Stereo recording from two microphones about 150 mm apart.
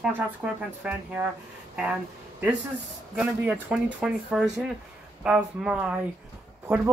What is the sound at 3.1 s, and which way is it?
Speech, 5° right (ahead or behind).